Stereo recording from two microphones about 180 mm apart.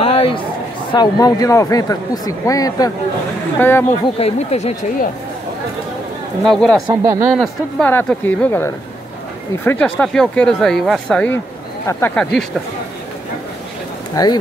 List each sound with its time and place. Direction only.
0.0 s a sound: 30° left (ahead or behind)
0.9 s speech: 20° left (ahead or behind)
4.2 s speech: 35° left (ahead or behind)
6.4 s speech: 5° left (ahead or behind)
7.0 s speech: 15° right (ahead or behind)
7.3 s speech: 5° left (ahead or behind)
14.1 s speech: 20° left (ahead or behind)